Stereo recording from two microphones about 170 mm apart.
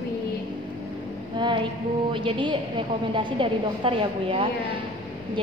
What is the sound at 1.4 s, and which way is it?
A woman's voice, 30° right (ahead or behind).